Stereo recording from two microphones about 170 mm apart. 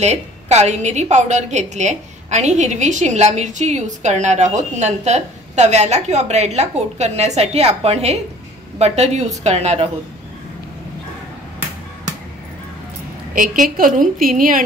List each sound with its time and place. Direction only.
0.0 s a woman's voice: 40° right (ahead or behind)
13.3 s a woman's voice: 55° right (ahead or behind)